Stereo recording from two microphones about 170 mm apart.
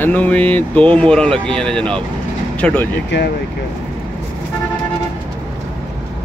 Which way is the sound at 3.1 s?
90° left.